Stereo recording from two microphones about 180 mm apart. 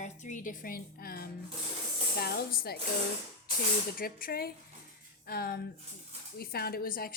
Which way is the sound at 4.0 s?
55° left (ahead or behind).